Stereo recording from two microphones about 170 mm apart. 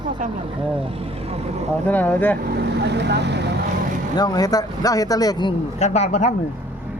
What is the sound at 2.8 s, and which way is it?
Speech, 80° right.